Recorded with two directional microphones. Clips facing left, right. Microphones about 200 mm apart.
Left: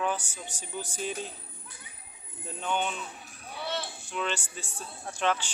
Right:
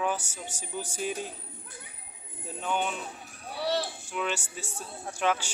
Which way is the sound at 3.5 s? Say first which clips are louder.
Right 5 dB; 35° right (ahead or behind).